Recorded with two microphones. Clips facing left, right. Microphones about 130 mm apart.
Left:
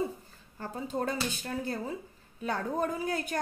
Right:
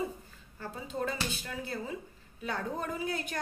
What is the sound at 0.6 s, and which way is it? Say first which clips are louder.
A woman's voice: left 3 dB; 45° left (ahead or behind).